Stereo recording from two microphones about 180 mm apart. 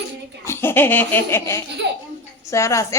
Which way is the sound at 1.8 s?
75° right (ahead or behind).